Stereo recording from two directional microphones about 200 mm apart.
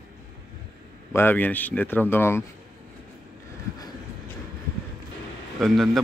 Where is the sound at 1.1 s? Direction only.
10° left (ahead or behind).